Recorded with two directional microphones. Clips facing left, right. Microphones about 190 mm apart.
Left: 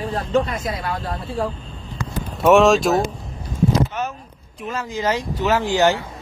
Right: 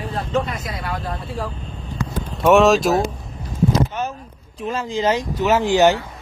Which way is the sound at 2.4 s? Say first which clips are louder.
Even; centre (ahead or behind).